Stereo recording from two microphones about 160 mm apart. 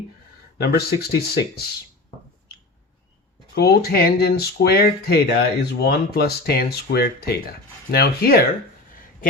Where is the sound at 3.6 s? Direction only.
75° left (ahead or behind).